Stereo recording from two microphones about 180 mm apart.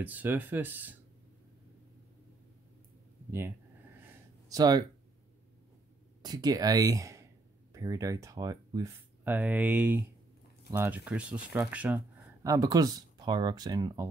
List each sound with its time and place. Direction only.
0.0 s speech: 10° right (ahead or behind)
3.3 s speech: 15° right (ahead or behind)
4.0 s a sound: 20° right (ahead or behind)
6.2 s speech: 20° right (ahead or behind)
12.4 s speech: 20° right (ahead or behind)